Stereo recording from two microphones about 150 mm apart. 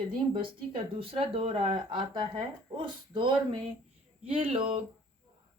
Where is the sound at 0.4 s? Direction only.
35° right (ahead or behind).